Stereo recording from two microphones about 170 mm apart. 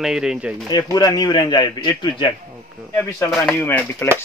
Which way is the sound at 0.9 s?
20° left (ahead or behind).